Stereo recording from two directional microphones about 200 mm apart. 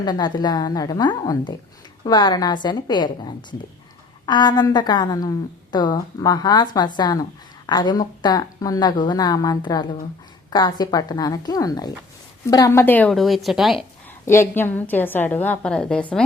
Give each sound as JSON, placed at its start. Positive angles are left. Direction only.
{"t": 0.0, "sound": "a woman's voice", "side_deg": 20}
{"t": 14.3, "sound": "a woman's voice", "side_deg": 10}